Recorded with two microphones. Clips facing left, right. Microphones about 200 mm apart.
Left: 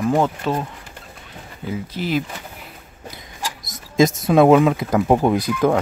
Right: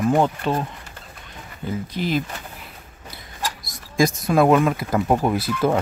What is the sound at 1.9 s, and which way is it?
Speech, 10° left (ahead or behind).